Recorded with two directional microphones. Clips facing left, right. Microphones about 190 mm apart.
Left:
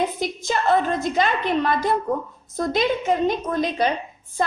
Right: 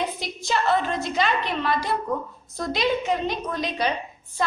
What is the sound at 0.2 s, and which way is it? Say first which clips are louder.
A woman's voice: left 2 dB; 50° left (ahead or behind).